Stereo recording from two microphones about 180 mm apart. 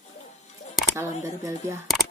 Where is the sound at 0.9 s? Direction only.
15° right (ahead or behind).